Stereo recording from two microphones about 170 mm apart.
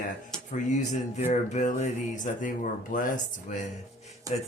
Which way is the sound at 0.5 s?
45° left (ahead or behind).